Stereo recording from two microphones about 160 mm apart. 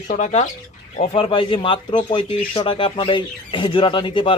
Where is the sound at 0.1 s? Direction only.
45° left (ahead or behind).